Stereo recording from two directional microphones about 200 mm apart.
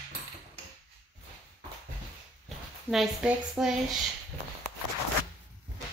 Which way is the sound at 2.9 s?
5° right (ahead or behind).